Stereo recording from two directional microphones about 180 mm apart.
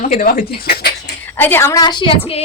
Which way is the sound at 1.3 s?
10° left (ahead or behind).